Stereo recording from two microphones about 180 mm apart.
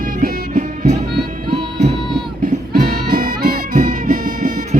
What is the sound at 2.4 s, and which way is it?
Music, 50° right (ahead or behind).